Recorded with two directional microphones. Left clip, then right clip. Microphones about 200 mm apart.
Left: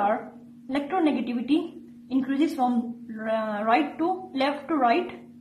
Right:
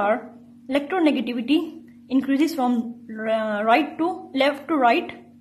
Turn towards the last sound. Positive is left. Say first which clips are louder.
# right 4 dB
turn(degrees=-40)  # may be behind; listen again after turning